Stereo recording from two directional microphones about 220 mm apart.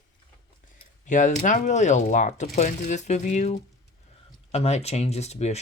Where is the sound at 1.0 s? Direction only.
35° left (ahead or behind).